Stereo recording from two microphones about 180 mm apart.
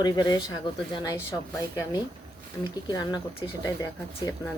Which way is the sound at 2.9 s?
20° left (ahead or behind).